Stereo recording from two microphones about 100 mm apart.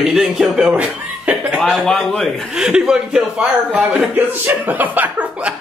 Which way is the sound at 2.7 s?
5° right (ahead or behind).